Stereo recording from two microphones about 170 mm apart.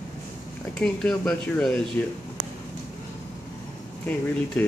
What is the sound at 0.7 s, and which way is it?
Speech, 5° left (ahead or behind).